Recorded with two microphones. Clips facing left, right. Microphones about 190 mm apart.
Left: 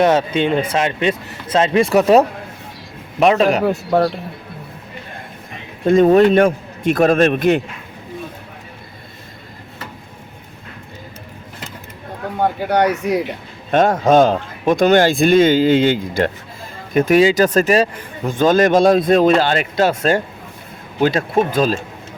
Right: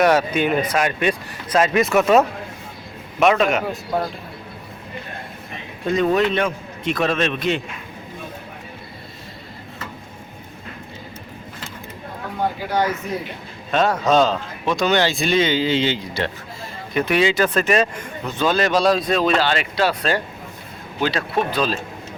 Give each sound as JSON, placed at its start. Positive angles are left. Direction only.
{"t": 0.0, "sound": "speech", "side_deg": 25}
{"t": 3.7, "sound": "speech", "side_deg": 75}
{"t": 5.8, "sound": "a man's voice", "side_deg": 45}
{"t": 12.4, "sound": "speech", "side_deg": 60}
{"t": 13.7, "sound": "a man's voice", "side_deg": 50}